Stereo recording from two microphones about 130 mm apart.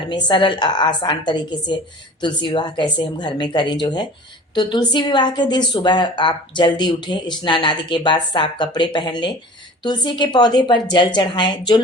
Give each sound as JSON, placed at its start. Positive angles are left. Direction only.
{"t": 0.1, "sound": "a woman's voice", "side_deg": 35}